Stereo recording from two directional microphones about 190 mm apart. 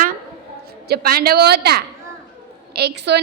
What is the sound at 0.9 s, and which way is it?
A woman's voice, 50° right (ahead or behind).